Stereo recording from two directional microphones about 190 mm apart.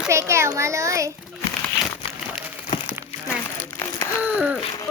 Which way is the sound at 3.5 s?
15° left (ahead or behind).